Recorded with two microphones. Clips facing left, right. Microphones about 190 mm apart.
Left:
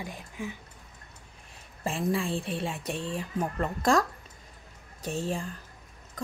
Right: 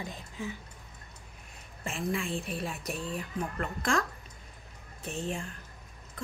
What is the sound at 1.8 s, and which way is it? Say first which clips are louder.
Speech: left 4 dB; 35° left (ahead or behind).